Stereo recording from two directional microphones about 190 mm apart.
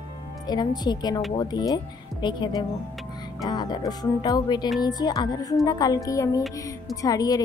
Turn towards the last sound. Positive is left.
turn(degrees=20)  # may be behind; listen again after turning